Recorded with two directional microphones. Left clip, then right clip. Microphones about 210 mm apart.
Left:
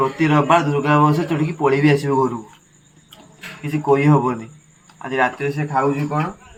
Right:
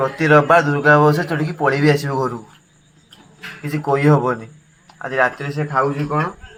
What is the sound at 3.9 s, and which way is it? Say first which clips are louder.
Speech: even; 15° right (ahead or behind).